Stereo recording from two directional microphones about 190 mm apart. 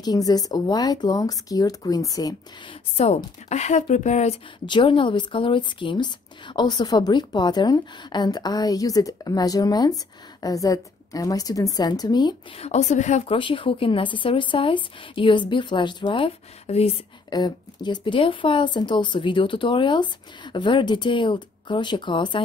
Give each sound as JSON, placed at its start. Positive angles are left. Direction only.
{"t": 0.0, "sound": "a woman's voice", "side_deg": 20}
{"t": 3.4, "sound": "speech", "side_deg": 35}
{"t": 4.6, "sound": "a woman's voice", "side_deg": 25}
{"t": 12.6, "sound": "a woman's voice", "side_deg": 35}